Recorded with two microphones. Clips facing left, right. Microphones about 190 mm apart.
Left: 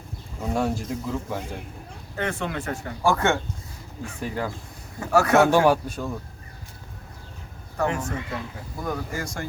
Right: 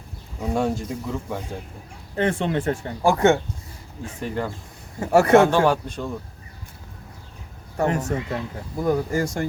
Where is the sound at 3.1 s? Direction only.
15° right (ahead or behind).